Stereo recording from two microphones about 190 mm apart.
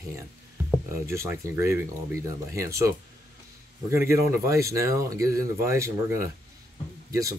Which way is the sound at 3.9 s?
15° right (ahead or behind).